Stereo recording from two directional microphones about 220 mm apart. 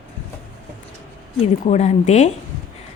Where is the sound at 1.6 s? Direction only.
30° left (ahead or behind).